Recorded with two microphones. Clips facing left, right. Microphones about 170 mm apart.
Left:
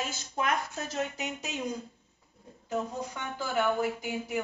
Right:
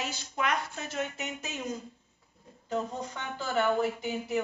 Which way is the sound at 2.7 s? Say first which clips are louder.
Even; 10° left (ahead or behind).